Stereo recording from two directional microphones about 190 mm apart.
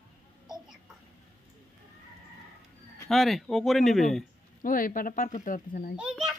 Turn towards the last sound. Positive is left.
turn(degrees=0)  # may be behind; listen again after turning